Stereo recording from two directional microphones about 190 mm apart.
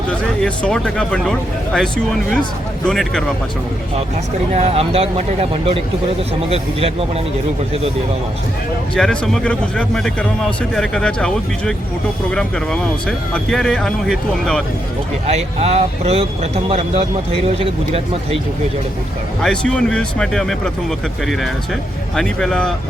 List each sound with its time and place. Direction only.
0.1 s a man's voice: 5° left (ahead or behind)
4.5 s speech: 35° right (ahead or behind)
9.0 s a man's voice: centre (ahead or behind)
15.3 s speech: 35° right (ahead or behind)
19.4 s a man's voice: 5° left (ahead or behind)
22.1 s a man's voice: 5° left (ahead or behind)